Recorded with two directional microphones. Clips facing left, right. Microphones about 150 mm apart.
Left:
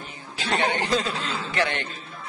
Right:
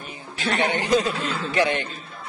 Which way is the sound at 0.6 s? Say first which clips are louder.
Right 3 dB; 15° right (ahead or behind).